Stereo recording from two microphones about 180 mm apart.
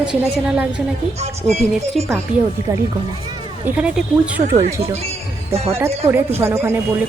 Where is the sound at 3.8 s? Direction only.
5° right (ahead or behind).